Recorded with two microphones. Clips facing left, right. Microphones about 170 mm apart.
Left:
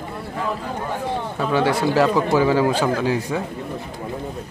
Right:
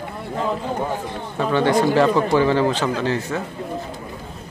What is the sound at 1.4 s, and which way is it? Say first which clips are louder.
Speech: right 3 dB; 5° left (ahead or behind).